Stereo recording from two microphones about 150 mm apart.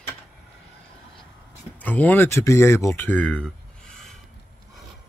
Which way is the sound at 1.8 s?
10° left (ahead or behind).